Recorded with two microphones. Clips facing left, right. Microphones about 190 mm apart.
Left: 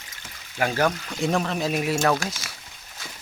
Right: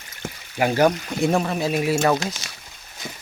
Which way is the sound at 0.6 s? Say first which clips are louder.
Right 5 dB; 15° right (ahead or behind).